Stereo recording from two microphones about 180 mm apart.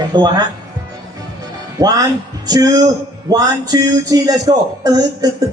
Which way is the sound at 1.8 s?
20° right (ahead or behind).